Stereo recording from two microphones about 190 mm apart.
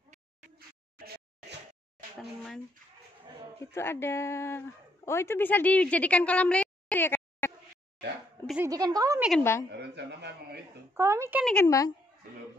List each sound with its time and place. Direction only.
0.6 s a sound: 55° right (ahead or behind)
3.7 s a woman's voice: 10° left (ahead or behind)
8.6 s a woman's voice: 20° right (ahead or behind)
9.4 s a woman's voice: 15° left (ahead or behind)
9.7 s a man's voice: 60° right (ahead or behind)
11.0 s speech: 15° right (ahead or behind)
11.6 s a woman's voice: 20° left (ahead or behind)